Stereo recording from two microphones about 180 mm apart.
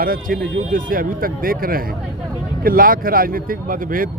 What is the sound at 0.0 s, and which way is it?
Speech, 50° right (ahead or behind).